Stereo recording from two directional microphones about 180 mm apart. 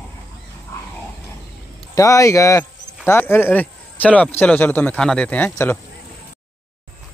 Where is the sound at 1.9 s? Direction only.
15° left (ahead or behind).